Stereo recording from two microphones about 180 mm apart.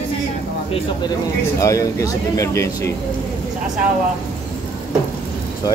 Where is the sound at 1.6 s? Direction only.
20° left (ahead or behind).